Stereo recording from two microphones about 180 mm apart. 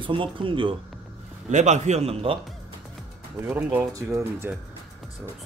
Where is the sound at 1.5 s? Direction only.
40° right (ahead or behind).